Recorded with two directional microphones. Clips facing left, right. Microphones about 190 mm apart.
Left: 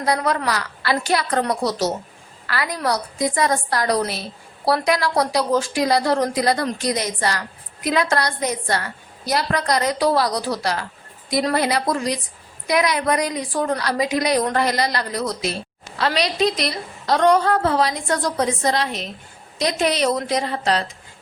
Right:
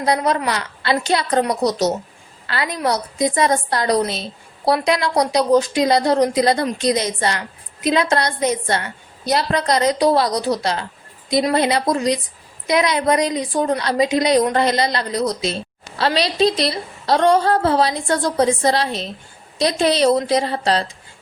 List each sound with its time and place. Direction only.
0.0 s a woman's voice: 20° right (ahead or behind)